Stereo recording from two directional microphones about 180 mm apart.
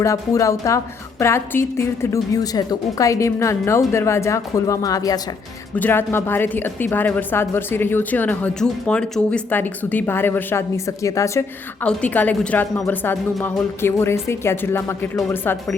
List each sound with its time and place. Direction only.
0.0 s a woman's voice: 20° left (ahead or behind)